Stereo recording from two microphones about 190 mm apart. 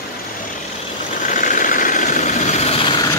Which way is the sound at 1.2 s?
45° left (ahead or behind).